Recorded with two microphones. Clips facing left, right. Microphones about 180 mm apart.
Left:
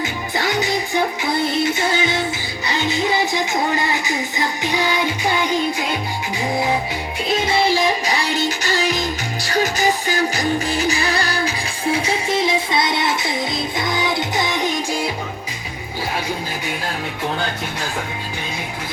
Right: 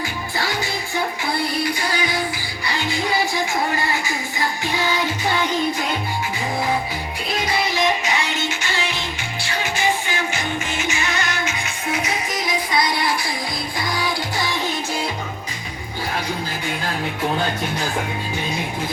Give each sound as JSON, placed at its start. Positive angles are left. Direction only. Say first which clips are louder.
{"t": 0.0, "sound": "music", "louder": "left 3 dB", "side_deg": 20}
{"t": 7.4, "sound": "music", "louder": "left 3 dB", "side_deg": 30}